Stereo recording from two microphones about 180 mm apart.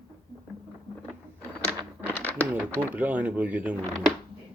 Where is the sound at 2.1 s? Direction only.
10° left (ahead or behind).